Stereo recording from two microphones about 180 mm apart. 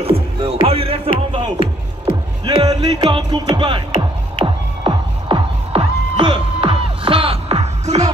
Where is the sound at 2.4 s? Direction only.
25° right (ahead or behind).